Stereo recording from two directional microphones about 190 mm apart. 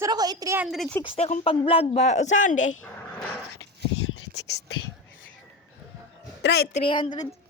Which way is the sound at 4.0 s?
75° left (ahead or behind).